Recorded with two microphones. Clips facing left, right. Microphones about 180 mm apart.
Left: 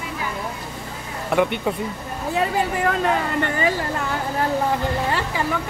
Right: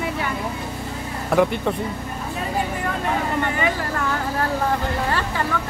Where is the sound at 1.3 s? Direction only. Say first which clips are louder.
Right 1 dB; centre (ahead or behind).